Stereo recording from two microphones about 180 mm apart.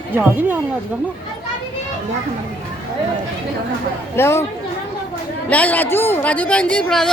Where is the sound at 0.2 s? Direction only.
10° right (ahead or behind).